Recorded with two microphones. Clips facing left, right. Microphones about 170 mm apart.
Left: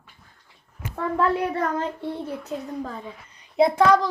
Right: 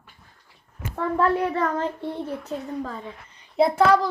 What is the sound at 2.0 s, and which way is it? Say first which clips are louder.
Speech: even; 5° left (ahead or behind).